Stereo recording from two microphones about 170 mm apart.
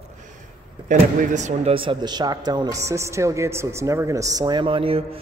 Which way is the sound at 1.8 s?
25° right (ahead or behind).